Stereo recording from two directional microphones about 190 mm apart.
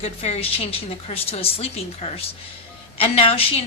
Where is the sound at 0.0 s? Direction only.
30° left (ahead or behind).